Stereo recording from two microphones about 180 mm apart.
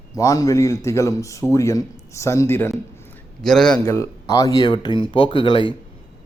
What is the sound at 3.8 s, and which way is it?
A man's voice, 15° left (ahead or behind).